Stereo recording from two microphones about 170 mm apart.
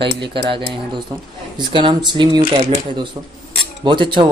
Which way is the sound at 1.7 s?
30° right (ahead or behind).